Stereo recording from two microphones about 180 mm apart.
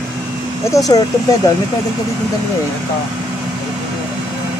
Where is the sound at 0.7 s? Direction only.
20° left (ahead or behind).